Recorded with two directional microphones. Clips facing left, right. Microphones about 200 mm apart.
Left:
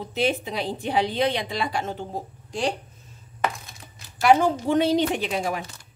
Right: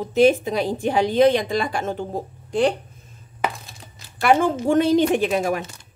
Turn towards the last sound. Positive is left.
turn(degrees=-50)  # may be behind; listen again after turning